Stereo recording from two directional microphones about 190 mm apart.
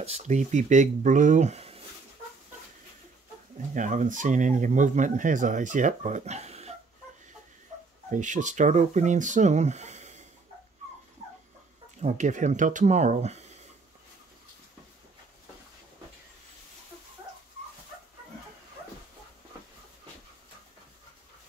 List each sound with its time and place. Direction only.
0.0 s speech: 35° right (ahead or behind)
3.7 s speech: 40° right (ahead or behind)
8.1 s speech: 40° right (ahead or behind)
12.0 s speech: 40° right (ahead or behind)